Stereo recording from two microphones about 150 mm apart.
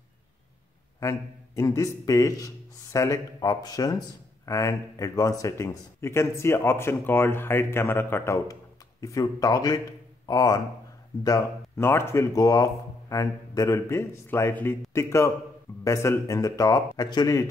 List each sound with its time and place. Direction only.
0.9 s speech: 20° left (ahead or behind)